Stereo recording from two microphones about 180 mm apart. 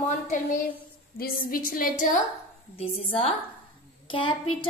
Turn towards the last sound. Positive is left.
turn(degrees=30)  # may be behind; listen again after turning